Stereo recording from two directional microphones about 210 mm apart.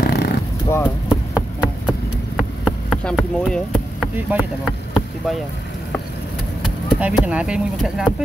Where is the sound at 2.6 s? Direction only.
Centre (ahead or behind).